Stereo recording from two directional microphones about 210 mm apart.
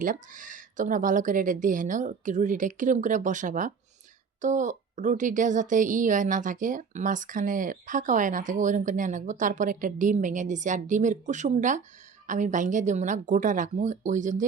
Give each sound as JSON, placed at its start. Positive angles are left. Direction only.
{"t": 0.0, "sound": "a woman's voice", "side_deg": -40}